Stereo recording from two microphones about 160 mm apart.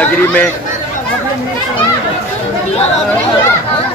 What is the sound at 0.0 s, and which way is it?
Speech, 10° left (ahead or behind).